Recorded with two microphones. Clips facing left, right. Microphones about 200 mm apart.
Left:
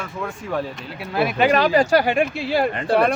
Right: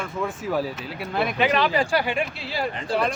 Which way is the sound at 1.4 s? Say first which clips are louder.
Left 5 dB; 45° left (ahead or behind).